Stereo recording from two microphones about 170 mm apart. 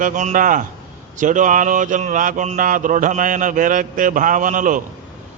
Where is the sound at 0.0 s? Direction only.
45° right (ahead or behind).